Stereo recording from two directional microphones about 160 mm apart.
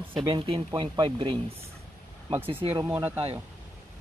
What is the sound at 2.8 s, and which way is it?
Speech, 15° right (ahead or behind).